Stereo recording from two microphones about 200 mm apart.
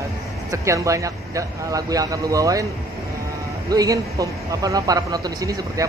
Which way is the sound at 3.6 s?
20° right (ahead or behind).